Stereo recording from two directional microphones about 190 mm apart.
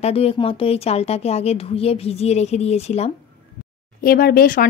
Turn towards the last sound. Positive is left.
turn(degrees=50)  # may be behind; listen again after turning